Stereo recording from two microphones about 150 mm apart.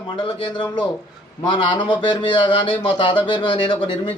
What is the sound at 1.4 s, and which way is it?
A man's voice, 30° left (ahead or behind).